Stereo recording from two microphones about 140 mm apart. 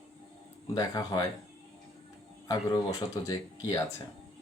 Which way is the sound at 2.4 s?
25° left (ahead or behind).